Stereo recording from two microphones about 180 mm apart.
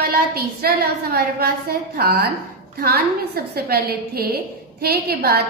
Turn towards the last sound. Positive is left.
turn(degrees=-60)  # may be behind; listen again after turning